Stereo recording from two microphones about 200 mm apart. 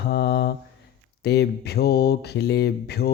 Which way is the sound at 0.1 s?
55° left (ahead or behind).